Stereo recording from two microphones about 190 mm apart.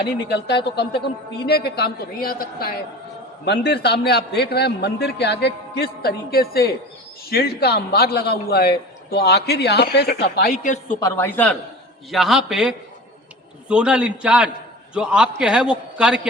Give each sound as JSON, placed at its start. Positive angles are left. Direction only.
{"t": 0.0, "sound": "a man's voice", "side_deg": 60}
{"t": 3.4, "sound": "a man's voice", "side_deg": 65}
{"t": 11.0, "sound": "a man's voice", "side_deg": 10}
{"t": 12.1, "sound": "a man's voice", "side_deg": 0}